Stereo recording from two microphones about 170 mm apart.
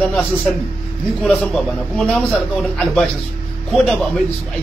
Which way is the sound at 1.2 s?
5° left (ahead or behind).